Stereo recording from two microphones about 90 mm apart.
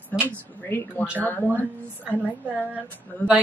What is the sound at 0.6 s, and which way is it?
Speech, 25° left (ahead or behind).